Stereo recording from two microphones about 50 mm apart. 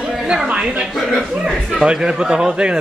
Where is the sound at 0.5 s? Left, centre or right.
Right.